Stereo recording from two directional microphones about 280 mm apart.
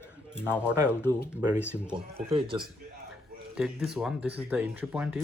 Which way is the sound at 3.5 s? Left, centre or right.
Centre.